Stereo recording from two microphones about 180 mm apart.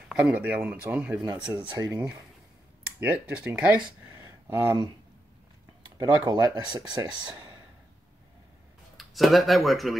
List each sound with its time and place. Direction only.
0.1 s speech: 5° right (ahead or behind)
5.9 s speech: 20° right (ahead or behind)
8.9 s speech: centre (ahead or behind)